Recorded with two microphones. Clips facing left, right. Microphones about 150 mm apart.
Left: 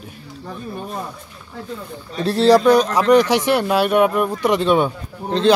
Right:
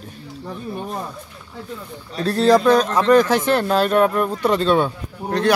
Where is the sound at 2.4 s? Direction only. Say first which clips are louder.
Left 2 dB; centre (ahead or behind).